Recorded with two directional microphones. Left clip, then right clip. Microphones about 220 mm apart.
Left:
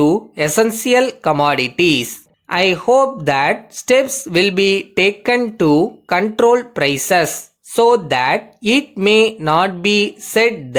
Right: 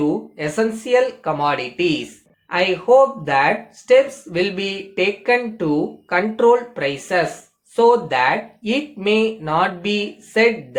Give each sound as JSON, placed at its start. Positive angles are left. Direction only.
{"t": 0.0, "sound": "speech", "side_deg": 50}